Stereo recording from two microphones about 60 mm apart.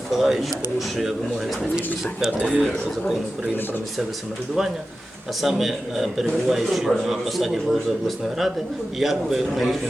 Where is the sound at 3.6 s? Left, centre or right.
Left.